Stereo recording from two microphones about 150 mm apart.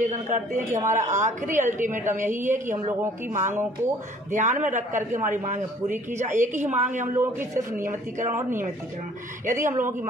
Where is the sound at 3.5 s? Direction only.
15° right (ahead or behind).